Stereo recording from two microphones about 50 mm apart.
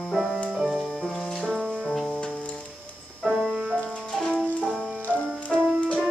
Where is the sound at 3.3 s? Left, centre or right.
Centre.